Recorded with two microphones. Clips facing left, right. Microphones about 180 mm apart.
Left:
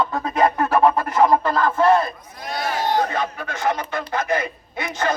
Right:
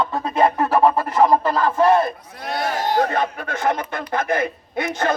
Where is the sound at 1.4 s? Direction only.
10° right (ahead or behind).